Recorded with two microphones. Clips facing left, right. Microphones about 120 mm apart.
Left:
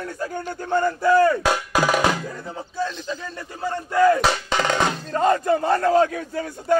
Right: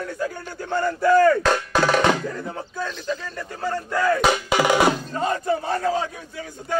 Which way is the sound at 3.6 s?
15° left (ahead or behind).